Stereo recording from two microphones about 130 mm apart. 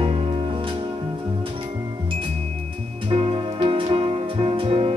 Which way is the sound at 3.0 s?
45° right (ahead or behind).